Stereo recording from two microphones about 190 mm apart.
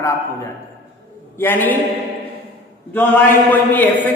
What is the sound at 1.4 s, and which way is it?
Speech, 10° left (ahead or behind).